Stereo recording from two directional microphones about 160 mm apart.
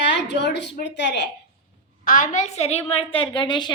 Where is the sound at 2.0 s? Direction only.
55° left (ahead or behind); by 3.7 s 30° left (ahead or behind).